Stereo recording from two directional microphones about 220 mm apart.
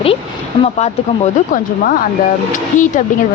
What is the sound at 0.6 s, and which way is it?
A woman's voice, 30° left (ahead or behind).